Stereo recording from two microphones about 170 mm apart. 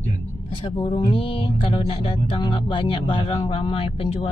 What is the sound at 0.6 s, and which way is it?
Speech, 35° left (ahead or behind).